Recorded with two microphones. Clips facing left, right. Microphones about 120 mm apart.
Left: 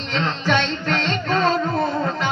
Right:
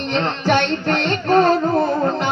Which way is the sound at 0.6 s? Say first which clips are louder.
Right 4 dB; 60° right (ahead or behind).